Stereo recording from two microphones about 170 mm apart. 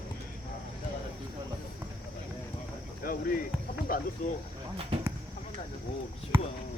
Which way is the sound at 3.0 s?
55° left (ahead or behind).